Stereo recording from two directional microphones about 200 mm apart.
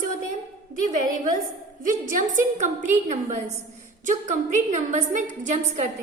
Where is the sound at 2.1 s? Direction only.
40° right (ahead or behind).